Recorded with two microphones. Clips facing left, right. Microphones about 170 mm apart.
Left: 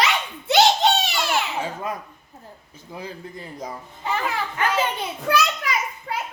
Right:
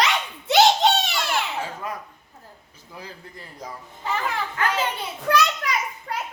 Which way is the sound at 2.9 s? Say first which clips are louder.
Left 6 dB; 20° left (ahead or behind).